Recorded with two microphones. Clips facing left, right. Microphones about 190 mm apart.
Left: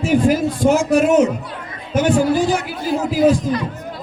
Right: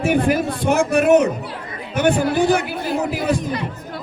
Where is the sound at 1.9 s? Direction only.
60° right (ahead or behind).